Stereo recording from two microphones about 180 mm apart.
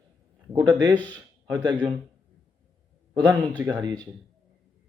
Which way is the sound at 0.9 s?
10° left (ahead or behind).